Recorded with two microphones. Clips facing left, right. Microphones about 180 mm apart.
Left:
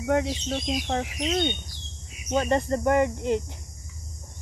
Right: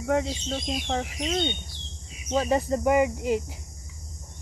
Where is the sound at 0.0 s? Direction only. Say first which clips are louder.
Left 1 dB; centre (ahead or behind).